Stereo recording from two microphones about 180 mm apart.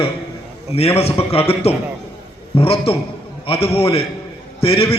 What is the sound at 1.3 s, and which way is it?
A man's voice, 35° left (ahead or behind).